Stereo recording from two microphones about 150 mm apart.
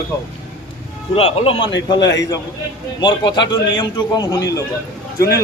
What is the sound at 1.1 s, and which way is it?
A man's voice, 40° left (ahead or behind).